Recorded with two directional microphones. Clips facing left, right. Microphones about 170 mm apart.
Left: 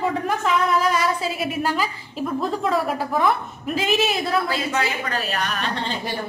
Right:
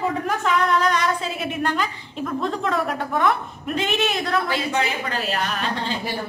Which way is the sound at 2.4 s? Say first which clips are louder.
Left 1 dB; 5° left (ahead or behind).